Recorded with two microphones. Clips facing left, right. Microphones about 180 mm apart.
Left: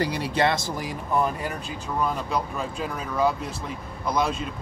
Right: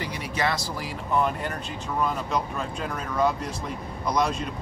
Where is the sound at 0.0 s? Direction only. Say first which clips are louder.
Left 5 dB; 30° left (ahead or behind).